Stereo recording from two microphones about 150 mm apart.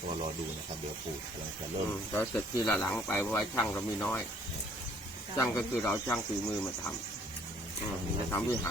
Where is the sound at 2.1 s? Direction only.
15° left (ahead or behind).